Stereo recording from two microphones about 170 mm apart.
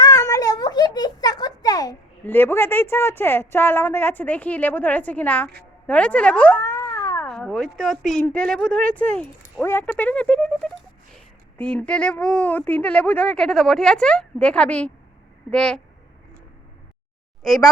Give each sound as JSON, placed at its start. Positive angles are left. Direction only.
{"t": 0.0, "sound": "a sound", "side_deg": 20}
{"t": 2.2, "sound": "speech", "side_deg": 10}
{"t": 5.9, "sound": "boing", "side_deg": 10}
{"t": 7.2, "sound": "speech", "side_deg": 5}
{"t": 17.4, "sound": "speech", "side_deg": 0}